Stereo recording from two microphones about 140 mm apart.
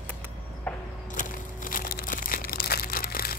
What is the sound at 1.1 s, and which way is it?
Crumpling, 80° left.